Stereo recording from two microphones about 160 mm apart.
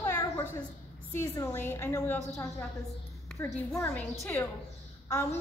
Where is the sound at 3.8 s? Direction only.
15° left (ahead or behind).